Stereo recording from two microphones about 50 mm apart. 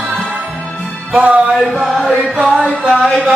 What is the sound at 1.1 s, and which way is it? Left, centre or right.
Music, right.